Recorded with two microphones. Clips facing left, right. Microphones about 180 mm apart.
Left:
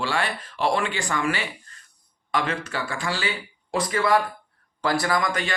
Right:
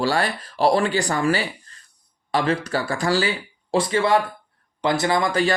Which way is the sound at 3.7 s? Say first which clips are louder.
Right 3 dB; 30° right (ahead or behind).